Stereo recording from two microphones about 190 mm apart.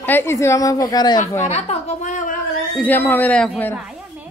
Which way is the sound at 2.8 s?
10° left (ahead or behind).